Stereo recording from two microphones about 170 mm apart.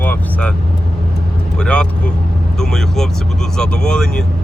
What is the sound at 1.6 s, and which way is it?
Vehicle, 5° left (ahead or behind).